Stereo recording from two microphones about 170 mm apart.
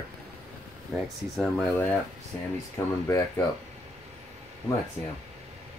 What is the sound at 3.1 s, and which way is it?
Speech, 15° left (ahead or behind).